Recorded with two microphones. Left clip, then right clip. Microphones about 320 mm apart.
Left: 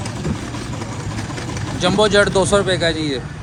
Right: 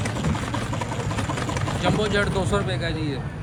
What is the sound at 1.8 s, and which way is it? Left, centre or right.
Speech, centre.